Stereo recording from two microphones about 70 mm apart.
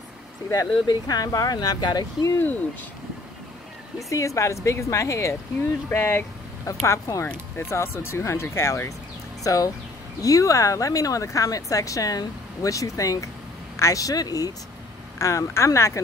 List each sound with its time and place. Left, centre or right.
0.5 s speech: left
4.1 s speech: left
15.1 s speech: left